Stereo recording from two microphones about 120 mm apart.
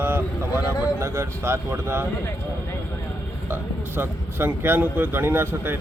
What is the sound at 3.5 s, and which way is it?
Speech, 15° right (ahead or behind).